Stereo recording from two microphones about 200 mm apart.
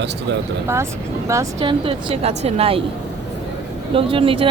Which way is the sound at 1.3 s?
15° right (ahead or behind).